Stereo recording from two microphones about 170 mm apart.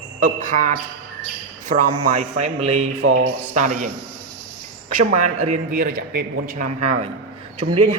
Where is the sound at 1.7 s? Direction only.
40° right (ahead or behind); by 6.6 s 55° right (ahead or behind).